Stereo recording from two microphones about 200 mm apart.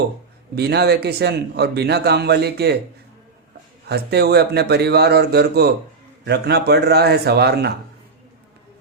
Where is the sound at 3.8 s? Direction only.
55° right (ahead or behind).